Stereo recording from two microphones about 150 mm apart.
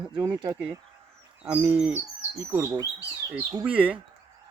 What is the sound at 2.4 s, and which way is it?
Speech, 20° right (ahead or behind).